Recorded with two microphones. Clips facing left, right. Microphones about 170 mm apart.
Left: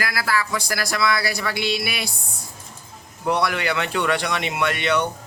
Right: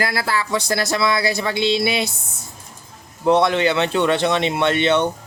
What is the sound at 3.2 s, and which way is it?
Speech, 25° right (ahead or behind).